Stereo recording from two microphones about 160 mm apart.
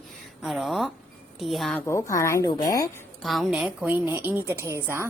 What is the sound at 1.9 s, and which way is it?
Speech, 20° left (ahead or behind).